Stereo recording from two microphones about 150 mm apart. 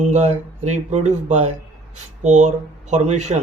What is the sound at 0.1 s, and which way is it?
Speech, 50° right (ahead or behind).